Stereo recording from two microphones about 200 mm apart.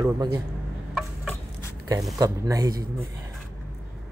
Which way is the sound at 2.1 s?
15° right (ahead or behind).